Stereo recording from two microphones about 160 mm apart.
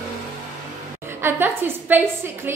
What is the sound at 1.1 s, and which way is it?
A woman's voice, 15° right (ahead or behind).